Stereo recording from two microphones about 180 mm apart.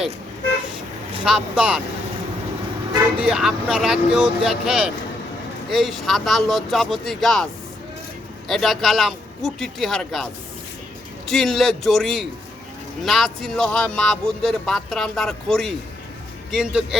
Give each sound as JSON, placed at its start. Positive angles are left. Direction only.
{"t": 1.2, "sound": "speech", "side_deg": -5}
{"t": 3.2, "sound": "speech", "side_deg": -5}
{"t": 8.4, "sound": "speech", "side_deg": 0}
{"t": 11.3, "sound": "speech", "side_deg": 0}